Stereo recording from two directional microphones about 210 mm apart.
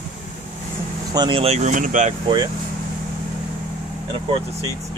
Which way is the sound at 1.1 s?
25° right (ahead or behind).